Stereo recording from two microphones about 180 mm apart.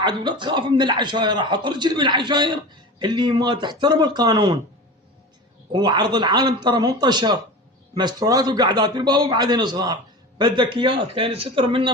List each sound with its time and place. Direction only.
0.0 s a man's voice: 25° right (ahead or behind)
5.7 s a man's voice: 25° right (ahead or behind)